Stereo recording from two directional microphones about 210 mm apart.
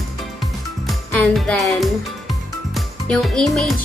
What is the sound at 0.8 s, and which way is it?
Music, 5° left (ahead or behind).